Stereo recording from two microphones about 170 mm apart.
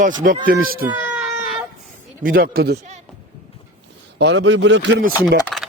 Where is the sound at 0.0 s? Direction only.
50° right (ahead or behind).